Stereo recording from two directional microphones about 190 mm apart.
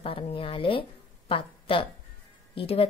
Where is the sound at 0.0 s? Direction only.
30° left (ahead or behind).